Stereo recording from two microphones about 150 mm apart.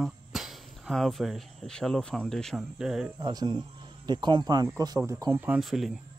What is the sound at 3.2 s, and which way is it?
Speech, 30° right (ahead or behind).